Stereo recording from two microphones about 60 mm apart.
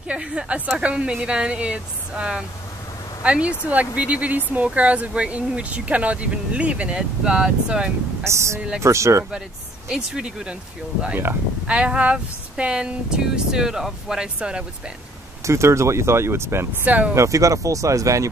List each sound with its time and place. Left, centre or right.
0.1 s speech: centre
8.2 s speech: right
9.8 s speech: centre
11.6 s speech: centre
15.4 s speech: right
16.8 s speech: right
17.1 s speech: right